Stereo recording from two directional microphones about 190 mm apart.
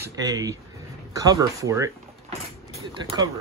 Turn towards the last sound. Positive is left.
turn(degrees=-20)  # may be behind; listen again after turning